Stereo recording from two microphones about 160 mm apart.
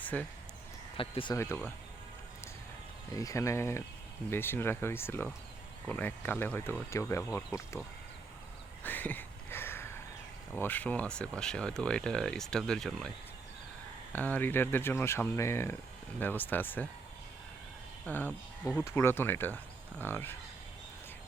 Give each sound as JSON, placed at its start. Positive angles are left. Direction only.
{"t": 0.0, "sound": "speech", "side_deg": 10}
{"t": 0.9, "sound": "speech", "side_deg": 30}
{"t": 1.4, "sound": "speech", "side_deg": 15}
{"t": 3.2, "sound": "speech", "side_deg": 20}
{"t": 8.8, "sound": "a sound", "side_deg": 10}
{"t": 10.5, "sound": "speech", "side_deg": 10}
{"t": 18.0, "sound": "speech", "side_deg": 10}